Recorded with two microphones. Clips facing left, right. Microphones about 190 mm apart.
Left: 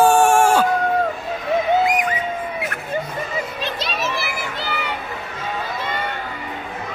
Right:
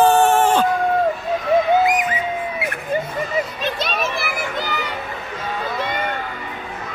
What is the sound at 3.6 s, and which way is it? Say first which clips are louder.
Children playing: right 2 dB; 50° right (ahead or behind).